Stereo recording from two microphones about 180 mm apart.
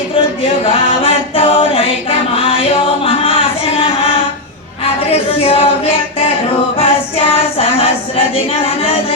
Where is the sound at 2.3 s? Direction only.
30° left (ahead or behind).